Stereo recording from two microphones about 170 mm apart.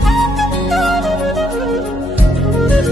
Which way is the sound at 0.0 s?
Centre (ahead or behind).